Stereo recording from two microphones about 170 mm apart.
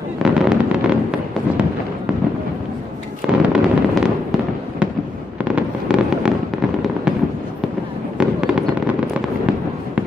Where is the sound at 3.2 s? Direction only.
5° right (ahead or behind).